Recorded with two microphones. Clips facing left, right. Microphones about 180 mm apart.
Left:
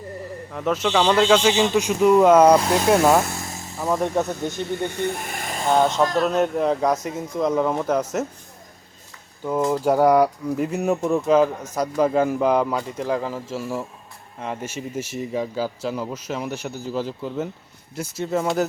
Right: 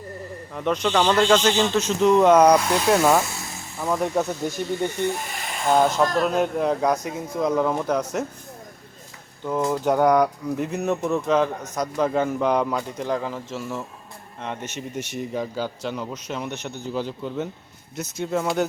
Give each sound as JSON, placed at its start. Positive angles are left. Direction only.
{"t": 0.5, "sound": "speech", "side_deg": 5}
{"t": 2.6, "sound": "speech", "side_deg": 30}
{"t": 2.9, "sound": "speech", "side_deg": 5}
{"t": 3.3, "sound": "a sound", "side_deg": 40}
{"t": 3.8, "sound": "speech", "side_deg": 5}
{"t": 4.9, "sound": "snake", "side_deg": 55}
{"t": 5.7, "sound": "speech", "side_deg": -5}
{"t": 9.4, "sound": "speech", "side_deg": 5}